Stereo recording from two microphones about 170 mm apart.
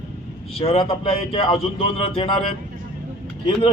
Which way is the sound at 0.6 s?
35° left (ahead or behind).